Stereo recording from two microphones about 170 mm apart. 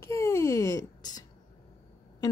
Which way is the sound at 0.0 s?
20° left (ahead or behind).